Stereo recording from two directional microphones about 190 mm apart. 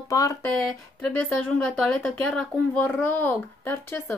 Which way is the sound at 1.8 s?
Centre (ahead or behind).